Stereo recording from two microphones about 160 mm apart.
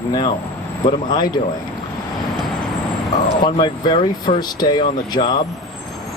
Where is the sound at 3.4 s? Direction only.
30° left (ahead or behind).